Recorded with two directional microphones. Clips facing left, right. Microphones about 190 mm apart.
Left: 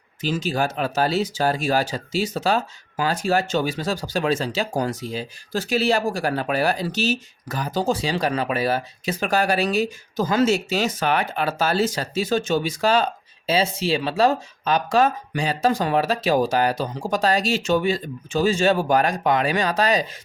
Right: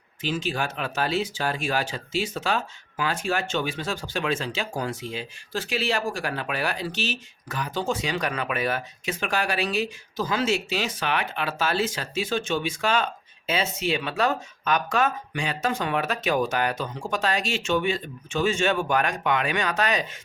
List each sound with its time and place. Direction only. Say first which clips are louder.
0.2 s speech: left 4 dB; 40° left (ahead or behind)